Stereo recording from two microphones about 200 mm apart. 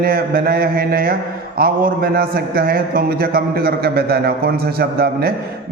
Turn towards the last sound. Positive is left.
turn(degrees=-50)  # may be behind; listen again after turning